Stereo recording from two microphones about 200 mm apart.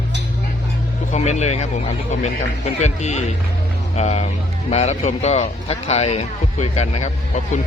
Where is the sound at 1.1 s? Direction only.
35° left (ahead or behind).